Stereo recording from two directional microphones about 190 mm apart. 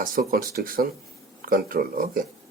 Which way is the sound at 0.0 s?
50° right (ahead or behind).